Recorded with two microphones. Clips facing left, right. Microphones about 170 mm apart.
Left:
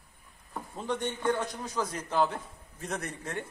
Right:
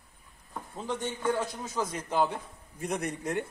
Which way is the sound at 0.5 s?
5° right (ahead or behind).